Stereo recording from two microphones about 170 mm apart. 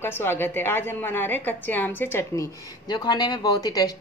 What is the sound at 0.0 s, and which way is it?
A woman's voice, 15° left (ahead or behind).